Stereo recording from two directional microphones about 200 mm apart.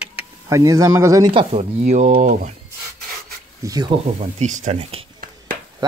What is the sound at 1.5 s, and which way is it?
Speech, 35° right (ahead or behind).